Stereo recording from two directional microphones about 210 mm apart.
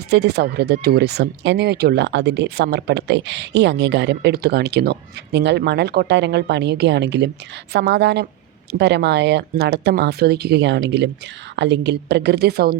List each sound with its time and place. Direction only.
0.1 s speech: 50° right (ahead or behind)